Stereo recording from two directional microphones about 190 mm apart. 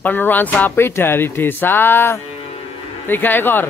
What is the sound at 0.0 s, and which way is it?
A man's voice, 10° left (ahead or behind).